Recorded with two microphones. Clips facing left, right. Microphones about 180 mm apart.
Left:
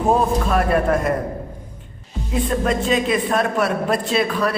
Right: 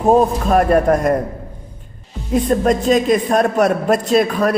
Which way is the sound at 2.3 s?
40° right (ahead or behind).